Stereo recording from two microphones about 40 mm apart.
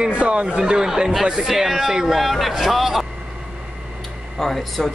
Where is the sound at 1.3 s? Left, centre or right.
Centre.